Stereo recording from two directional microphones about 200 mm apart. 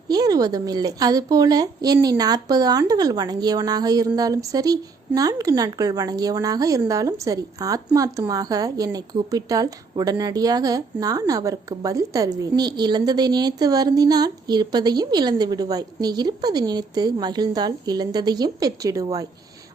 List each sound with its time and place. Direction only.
0.1 s a woman's voice: 20° right (ahead or behind)